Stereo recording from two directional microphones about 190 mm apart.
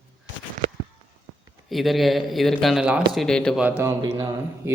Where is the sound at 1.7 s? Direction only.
Centre (ahead or behind).